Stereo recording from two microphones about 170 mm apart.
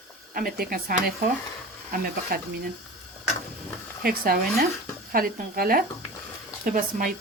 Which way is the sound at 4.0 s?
60° right (ahead or behind).